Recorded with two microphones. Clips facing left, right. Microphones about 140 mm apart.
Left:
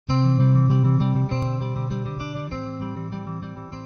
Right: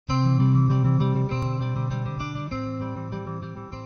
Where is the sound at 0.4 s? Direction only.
Centre (ahead or behind).